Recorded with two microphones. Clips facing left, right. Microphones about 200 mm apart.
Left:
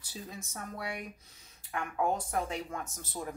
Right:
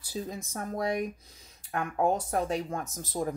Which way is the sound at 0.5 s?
40° right (ahead or behind).